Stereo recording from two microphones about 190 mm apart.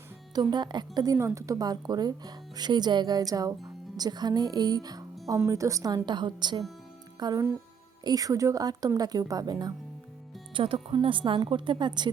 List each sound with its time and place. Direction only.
0.5 s a woman's voice: 20° right (ahead or behind)